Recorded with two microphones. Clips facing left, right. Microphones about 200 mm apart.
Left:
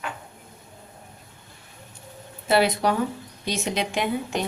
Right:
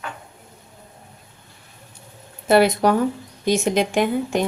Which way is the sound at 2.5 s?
45° right (ahead or behind).